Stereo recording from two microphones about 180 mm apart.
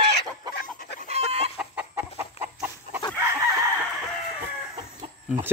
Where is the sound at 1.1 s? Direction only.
35° right (ahead or behind).